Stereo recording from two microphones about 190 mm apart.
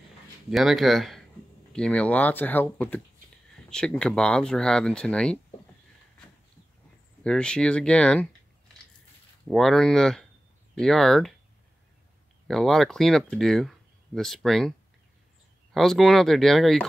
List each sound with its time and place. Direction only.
0.5 s speech: centre (ahead or behind)
7.2 s speech: 5° left (ahead or behind)
9.5 s speech: centre (ahead or behind)
12.4 s speech: centre (ahead or behind)